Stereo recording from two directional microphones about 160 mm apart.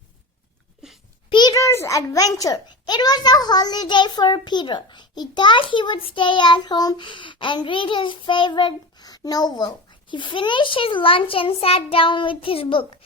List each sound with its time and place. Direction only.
1.3 s a child's voice: 25° left (ahead or behind)